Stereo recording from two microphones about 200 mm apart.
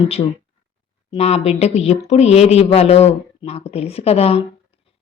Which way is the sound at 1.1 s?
30° left (ahead or behind).